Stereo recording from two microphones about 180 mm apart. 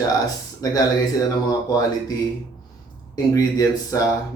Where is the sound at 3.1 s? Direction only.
20° left (ahead or behind).